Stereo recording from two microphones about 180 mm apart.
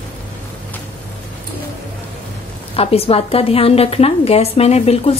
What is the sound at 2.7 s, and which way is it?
A woman's voice, 35° left (ahead or behind).